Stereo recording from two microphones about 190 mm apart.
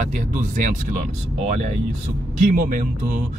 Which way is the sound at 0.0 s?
45° right (ahead or behind).